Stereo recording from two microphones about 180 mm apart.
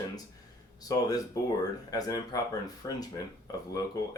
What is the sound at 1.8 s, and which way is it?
Speech, 20° left (ahead or behind).